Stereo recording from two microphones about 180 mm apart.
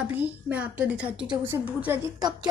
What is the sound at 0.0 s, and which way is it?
A woman's voice, 10° right (ahead or behind).